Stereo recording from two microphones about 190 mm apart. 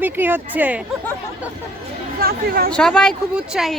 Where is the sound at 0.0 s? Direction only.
10° right (ahead or behind).